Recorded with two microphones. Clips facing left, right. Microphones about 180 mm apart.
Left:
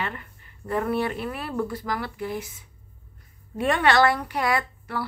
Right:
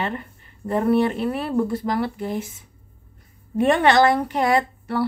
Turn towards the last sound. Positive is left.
turn(degrees=-30)  # may be behind; listen again after turning